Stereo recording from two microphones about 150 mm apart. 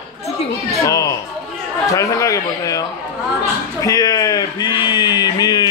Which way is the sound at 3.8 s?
25° left (ahead or behind).